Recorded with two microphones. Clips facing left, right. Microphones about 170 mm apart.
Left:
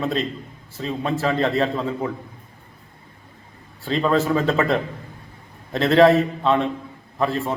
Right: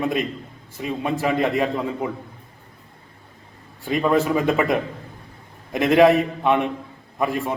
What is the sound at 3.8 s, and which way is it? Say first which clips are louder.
A man's voice: right 1 dB; 15° right (ahead or behind).